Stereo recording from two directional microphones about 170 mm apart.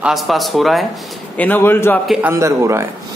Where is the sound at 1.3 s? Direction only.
10° left (ahead or behind).